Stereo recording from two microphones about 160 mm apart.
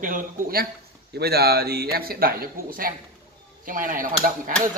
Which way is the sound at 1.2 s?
80° right.